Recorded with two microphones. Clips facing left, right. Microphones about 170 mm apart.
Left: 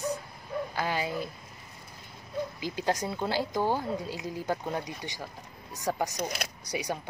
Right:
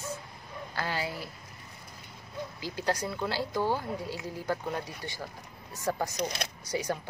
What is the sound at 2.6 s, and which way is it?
Speech, 15° left (ahead or behind).